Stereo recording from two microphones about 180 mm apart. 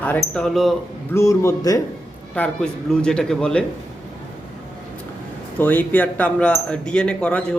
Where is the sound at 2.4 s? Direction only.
5° left (ahead or behind).